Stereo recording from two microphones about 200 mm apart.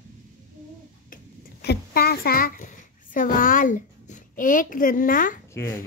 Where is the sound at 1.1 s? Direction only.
50° left (ahead or behind).